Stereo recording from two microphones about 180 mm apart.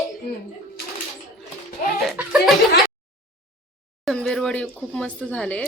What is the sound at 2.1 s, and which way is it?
Chuckle, 5° right (ahead or behind).